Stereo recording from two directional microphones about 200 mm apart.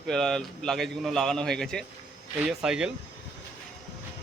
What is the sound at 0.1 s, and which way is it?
A man's voice, centre (ahead or behind).